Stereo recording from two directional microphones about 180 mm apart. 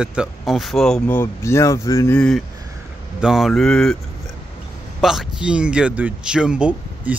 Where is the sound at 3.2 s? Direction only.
Centre (ahead or behind).